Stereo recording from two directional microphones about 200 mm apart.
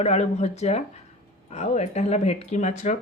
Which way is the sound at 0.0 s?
35° left (ahead or behind).